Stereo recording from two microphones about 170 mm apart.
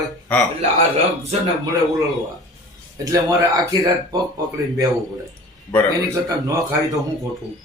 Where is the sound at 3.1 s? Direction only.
20° right (ahead or behind).